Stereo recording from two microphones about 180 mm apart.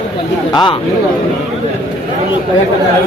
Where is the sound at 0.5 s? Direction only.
25° left (ahead or behind).